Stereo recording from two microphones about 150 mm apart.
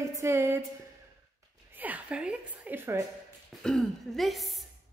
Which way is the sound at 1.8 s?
10° right (ahead or behind).